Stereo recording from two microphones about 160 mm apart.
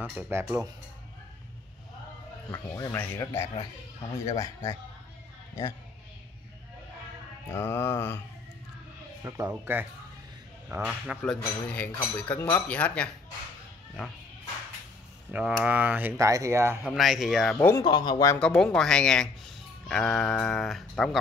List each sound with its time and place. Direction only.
0.0 s speech: 10° right (ahead or behind)
2.5 s speech: 20° left (ahead or behind)
4.2 s speech: 20° left (ahead or behind)
7.5 s speech: 15° left (ahead or behind)
9.2 s speech: 15° right (ahead or behind)
10.7 s mantra: 5° right (ahead or behind)
11.3 s speech: 10° left (ahead or behind)
15.3 s speech: 5° right (ahead or behind)
16.8 s mantra: centre (ahead or behind)
17.6 s speech: 15° left (ahead or behind)
17.8 s speech: 30° left (ahead or behind)
18.3 s speech: 15° left (ahead or behind)
18.6 s mantra: 5° left (ahead or behind)